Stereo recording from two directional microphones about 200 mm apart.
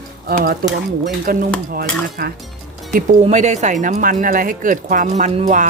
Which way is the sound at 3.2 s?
35° right (ahead or behind).